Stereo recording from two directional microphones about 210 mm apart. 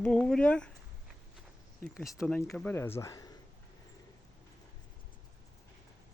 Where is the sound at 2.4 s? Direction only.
10° left (ahead or behind).